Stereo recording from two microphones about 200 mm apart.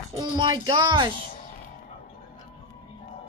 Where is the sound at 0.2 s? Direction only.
25° right (ahead or behind).